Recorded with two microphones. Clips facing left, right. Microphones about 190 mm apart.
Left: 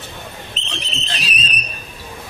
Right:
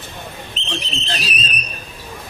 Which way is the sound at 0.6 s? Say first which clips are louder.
Right 1 dB; centre (ahead or behind).